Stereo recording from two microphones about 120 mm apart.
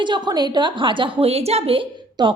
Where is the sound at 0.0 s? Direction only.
40° right (ahead or behind).